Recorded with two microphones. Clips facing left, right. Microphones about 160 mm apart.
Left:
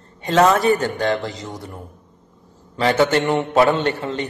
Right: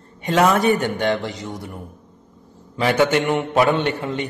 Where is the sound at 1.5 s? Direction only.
25° left (ahead or behind).